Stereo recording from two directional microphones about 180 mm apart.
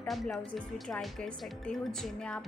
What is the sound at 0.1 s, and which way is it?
A woman's voice, centre (ahead or behind).